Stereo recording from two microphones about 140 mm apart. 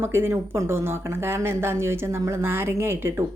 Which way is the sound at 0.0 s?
15° right (ahead or behind).